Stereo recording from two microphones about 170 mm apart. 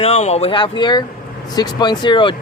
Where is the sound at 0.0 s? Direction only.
40° left (ahead or behind).